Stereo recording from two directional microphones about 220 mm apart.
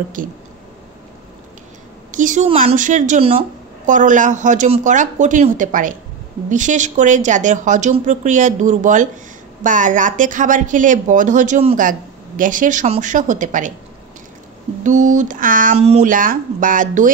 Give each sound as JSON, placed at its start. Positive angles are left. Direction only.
{"t": 0.2, "sound": "a woman's voice", "side_deg": -40}
{"t": 2.0, "sound": "a woman's voice", "side_deg": -35}
{"t": 14.8, "sound": "a woman's voice", "side_deg": -35}